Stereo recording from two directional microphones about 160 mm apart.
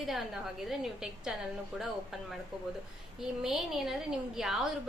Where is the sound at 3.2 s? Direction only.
5° right (ahead or behind).